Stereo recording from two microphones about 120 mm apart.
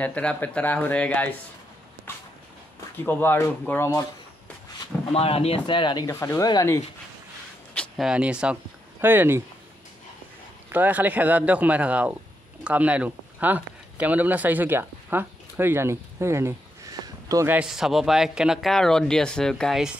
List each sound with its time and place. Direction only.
0.0 s speech: 10° left (ahead or behind)
3.0 s speech: 15° left (ahead or behind)
5.1 s speech: 55° left (ahead or behind)
6.0 s speech: 25° left (ahead or behind)
8.0 s speech: 10° right (ahead or behind)
10.7 s speech: 15° right (ahead or behind)
17.0 s a sound: 30° right (ahead or behind)
17.5 s speech: 5° right (ahead or behind)